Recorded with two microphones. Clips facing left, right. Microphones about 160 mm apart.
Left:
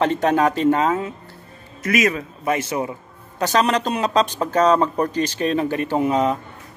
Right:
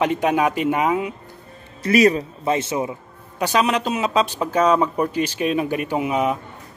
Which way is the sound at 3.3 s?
10° right (ahead or behind).